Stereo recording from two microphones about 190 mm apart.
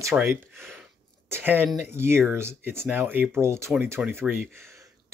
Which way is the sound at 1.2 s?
10° right (ahead or behind).